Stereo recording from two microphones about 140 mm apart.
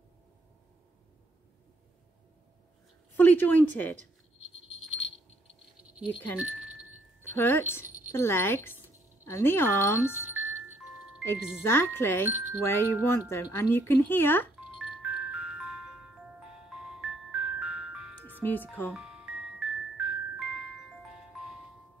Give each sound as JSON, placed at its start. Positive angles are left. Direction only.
{"t": 3.2, "sound": "speech", "side_deg": 15}
{"t": 4.8, "sound": "rattle", "side_deg": 0}
{"t": 5.9, "sound": "a sound", "side_deg": -10}
{"t": 7.2, "sound": "chime", "side_deg": 15}
{"t": 8.1, "sound": "speech", "side_deg": 20}
{"t": 10.4, "sound": "music", "side_deg": -15}
{"t": 11.6, "sound": "speech", "side_deg": 15}
{"t": 14.8, "sound": "music", "side_deg": -5}
{"t": 18.4, "sound": "speech", "side_deg": 15}
{"t": 18.9, "sound": "music", "side_deg": -5}